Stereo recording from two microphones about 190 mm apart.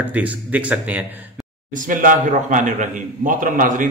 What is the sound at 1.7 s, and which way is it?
A man's voice, 45° right (ahead or behind).